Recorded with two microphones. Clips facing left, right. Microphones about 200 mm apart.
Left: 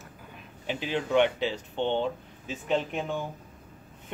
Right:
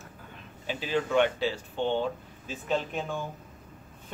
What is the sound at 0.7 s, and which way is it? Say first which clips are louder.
Speech: even; 20° left (ahead or behind).